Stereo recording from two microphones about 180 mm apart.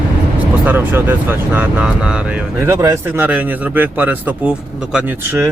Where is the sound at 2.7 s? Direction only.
15° right (ahead or behind).